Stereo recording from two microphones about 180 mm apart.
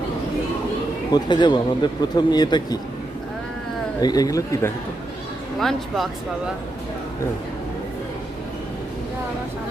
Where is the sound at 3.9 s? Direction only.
20° left (ahead or behind).